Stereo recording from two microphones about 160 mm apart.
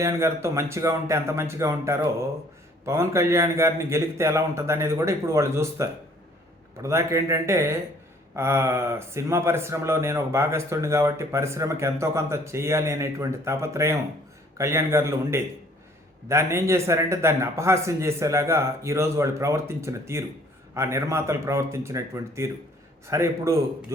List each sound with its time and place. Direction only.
0.0 s a man's voice: 20° right (ahead or behind)